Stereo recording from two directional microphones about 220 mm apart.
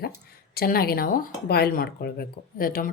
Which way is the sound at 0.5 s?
45° left (ahead or behind).